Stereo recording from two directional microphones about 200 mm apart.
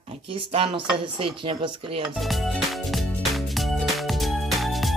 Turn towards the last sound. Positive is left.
turn(degrees=0)  # may be behind; listen again after turning